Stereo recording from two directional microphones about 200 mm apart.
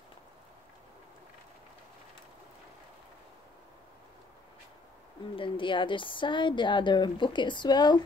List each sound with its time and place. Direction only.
5.3 s speech: 25° left (ahead or behind)